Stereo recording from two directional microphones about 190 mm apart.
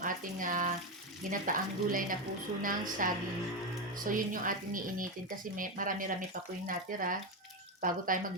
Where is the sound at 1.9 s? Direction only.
45° right (ahead or behind).